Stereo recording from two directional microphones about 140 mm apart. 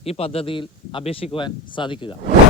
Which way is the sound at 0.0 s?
45° left (ahead or behind).